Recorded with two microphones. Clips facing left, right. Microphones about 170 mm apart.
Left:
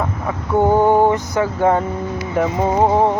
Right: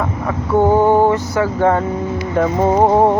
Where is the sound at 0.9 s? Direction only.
15° left (ahead or behind).